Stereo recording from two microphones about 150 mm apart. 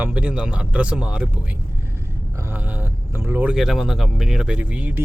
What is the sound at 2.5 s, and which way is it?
Speech, 10° right (ahead or behind).